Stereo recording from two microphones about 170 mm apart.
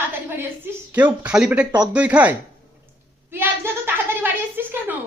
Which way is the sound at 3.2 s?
15° right (ahead or behind).